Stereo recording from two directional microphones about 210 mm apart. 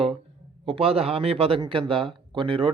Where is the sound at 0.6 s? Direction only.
25° right (ahead or behind).